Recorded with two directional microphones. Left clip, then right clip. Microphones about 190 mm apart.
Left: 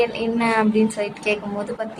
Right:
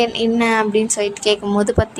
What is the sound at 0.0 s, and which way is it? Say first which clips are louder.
A woman's voice: right 4 dB; 50° right (ahead or behind).